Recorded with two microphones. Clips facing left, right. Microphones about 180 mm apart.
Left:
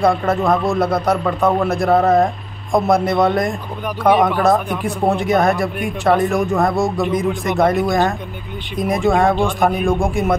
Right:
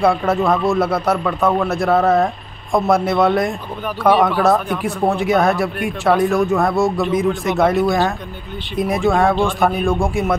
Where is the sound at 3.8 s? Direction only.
15° left (ahead or behind).